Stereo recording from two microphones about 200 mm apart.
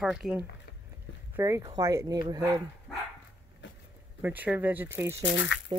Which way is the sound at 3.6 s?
65° left (ahead or behind).